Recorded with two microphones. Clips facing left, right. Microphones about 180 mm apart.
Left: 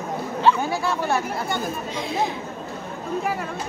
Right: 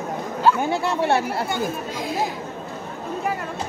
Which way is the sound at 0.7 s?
25° right (ahead or behind).